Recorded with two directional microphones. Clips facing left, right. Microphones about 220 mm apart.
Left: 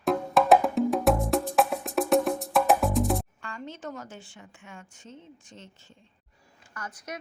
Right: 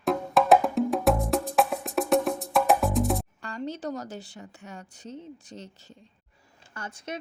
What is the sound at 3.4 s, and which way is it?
A woman's voice, 35° right (ahead or behind).